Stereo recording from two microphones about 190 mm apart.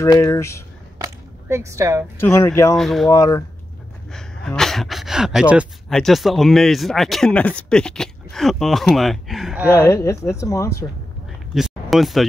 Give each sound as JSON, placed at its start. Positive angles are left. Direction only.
{"t": 0.0, "sound": "speech", "side_deg": 15}
{"t": 0.9, "sound": "a sound", "side_deg": -15}
{"t": 2.1, "sound": "speech", "side_deg": 15}
{"t": 2.8, "sound": "speech", "side_deg": 0}
{"t": 3.1, "sound": "speech", "side_deg": 20}
{"t": 4.1, "sound": "speech", "side_deg": 5}
{"t": 9.7, "sound": "speech", "side_deg": 15}
{"t": 11.5, "sound": "a sound", "side_deg": 0}